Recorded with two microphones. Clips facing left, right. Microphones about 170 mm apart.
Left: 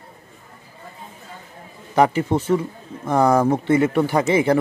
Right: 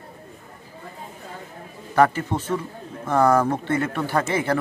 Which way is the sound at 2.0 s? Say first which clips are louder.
Left 2 dB; 10° left (ahead or behind).